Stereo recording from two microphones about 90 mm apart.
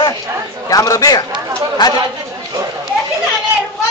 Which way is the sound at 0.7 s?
40° left (ahead or behind).